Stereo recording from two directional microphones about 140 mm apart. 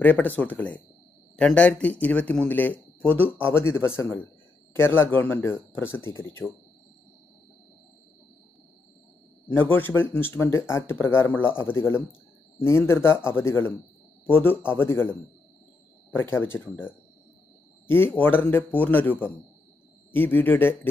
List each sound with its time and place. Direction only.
0.0 s speech: 10° left (ahead or behind)
9.5 s speech: 15° left (ahead or behind)